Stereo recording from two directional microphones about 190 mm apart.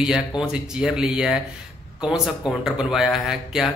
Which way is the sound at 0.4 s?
5° right (ahead or behind).